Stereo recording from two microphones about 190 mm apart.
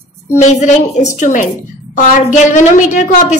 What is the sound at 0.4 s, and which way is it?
A woman's voice, 40° left (ahead or behind).